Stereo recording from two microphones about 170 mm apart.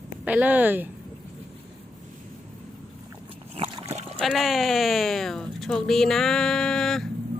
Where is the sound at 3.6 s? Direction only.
40° right (ahead or behind).